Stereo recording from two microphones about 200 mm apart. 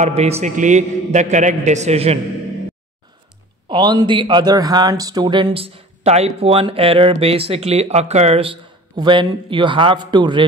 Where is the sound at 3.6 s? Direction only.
25° right (ahead or behind).